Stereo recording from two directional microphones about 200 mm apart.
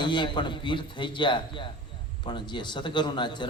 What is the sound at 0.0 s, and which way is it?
A man's voice, 25° left (ahead or behind).